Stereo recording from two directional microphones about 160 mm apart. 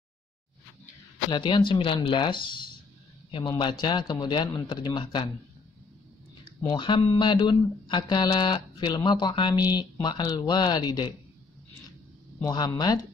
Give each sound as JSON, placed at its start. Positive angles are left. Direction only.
{"t": 1.3, "sound": "speech", "side_deg": 30}
{"t": 6.6, "sound": "speech", "side_deg": 30}
{"t": 12.4, "sound": "speech", "side_deg": 25}